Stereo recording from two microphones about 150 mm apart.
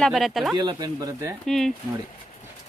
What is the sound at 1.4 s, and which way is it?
Speech, centre (ahead or behind).